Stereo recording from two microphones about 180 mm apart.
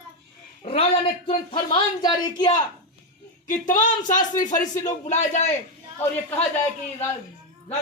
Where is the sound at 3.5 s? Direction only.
45° left (ahead or behind).